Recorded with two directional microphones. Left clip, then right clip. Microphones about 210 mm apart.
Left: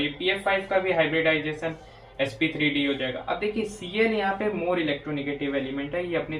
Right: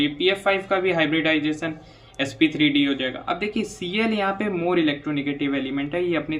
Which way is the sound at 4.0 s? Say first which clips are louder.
Even; 35° right (ahead or behind).